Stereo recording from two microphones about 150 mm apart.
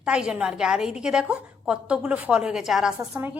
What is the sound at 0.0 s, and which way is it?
A woman's voice, 5° right (ahead or behind).